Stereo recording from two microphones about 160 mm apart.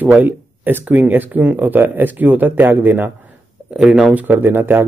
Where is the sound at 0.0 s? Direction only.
10° right (ahead or behind).